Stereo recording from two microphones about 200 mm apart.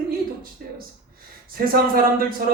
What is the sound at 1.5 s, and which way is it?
Speech, 45° right (ahead or behind).